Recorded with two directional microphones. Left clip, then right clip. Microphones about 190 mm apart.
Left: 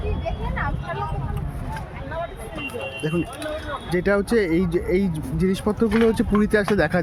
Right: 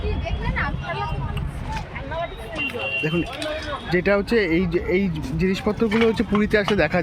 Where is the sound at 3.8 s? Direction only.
15° left (ahead or behind).